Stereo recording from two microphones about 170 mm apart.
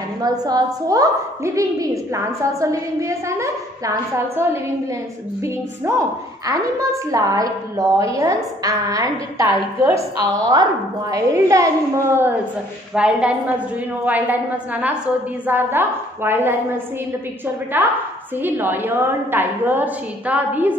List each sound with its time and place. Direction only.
0.2 s a woman's voice: 20° right (ahead or behind)